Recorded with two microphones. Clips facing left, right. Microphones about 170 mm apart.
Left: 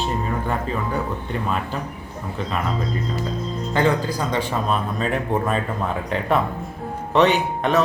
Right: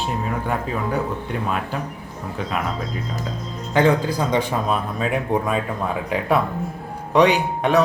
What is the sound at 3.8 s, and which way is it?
Speech, 15° right (ahead or behind).